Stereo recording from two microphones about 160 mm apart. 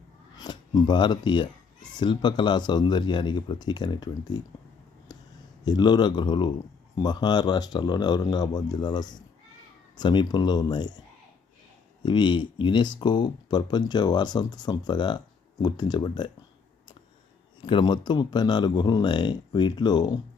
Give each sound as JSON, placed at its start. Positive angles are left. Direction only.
{"t": 0.3, "sound": "speech", "side_deg": 25}
{"t": 5.1, "sound": "a sound", "side_deg": 25}
{"t": 5.6, "sound": "speech", "side_deg": 25}
{"t": 12.0, "sound": "speech", "side_deg": 30}
{"t": 17.7, "sound": "speech", "side_deg": 30}